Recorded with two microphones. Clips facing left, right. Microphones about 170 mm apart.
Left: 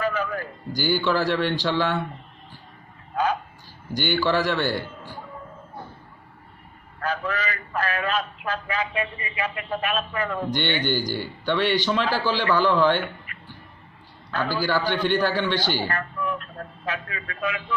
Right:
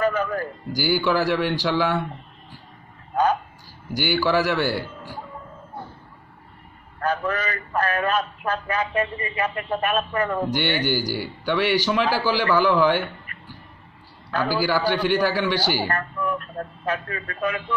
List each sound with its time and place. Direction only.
0.0 s music: 45° right (ahead or behind)
0.7 s a man's voice: 10° right (ahead or behind)
3.9 s a man's voice: 10° right (ahead or behind)
7.0 s a man's voice: 50° right (ahead or behind)
10.5 s a man's voice: 10° right (ahead or behind)
14.5 s a man's voice: 10° right (ahead or behind)
16.8 s a man's voice: 45° right (ahead or behind)